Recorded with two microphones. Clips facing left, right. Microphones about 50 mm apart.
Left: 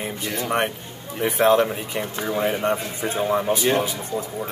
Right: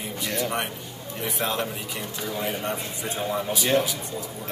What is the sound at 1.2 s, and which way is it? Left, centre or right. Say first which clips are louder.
Speech: left 10 dB; left.